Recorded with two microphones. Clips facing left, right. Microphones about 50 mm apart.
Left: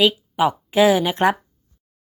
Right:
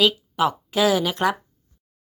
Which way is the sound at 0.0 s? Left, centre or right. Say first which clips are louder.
Left 2 dB; centre.